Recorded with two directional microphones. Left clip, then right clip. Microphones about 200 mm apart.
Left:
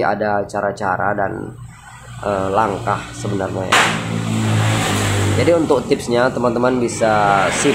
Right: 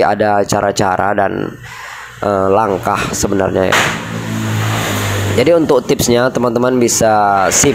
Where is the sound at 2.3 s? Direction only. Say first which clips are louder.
Right 5 dB; 40° right (ahead or behind).